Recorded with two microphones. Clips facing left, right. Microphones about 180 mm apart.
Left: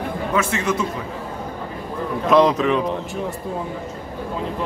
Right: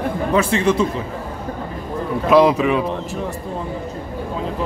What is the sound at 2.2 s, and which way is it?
Speech, 10° right (ahead or behind).